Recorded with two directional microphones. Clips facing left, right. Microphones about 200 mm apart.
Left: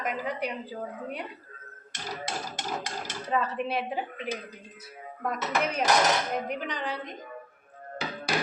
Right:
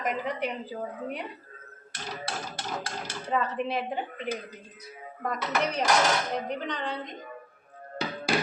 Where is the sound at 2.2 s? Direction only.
15° left (ahead or behind).